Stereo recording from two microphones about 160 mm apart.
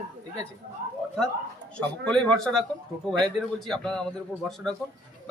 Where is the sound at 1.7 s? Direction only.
5° left (ahead or behind).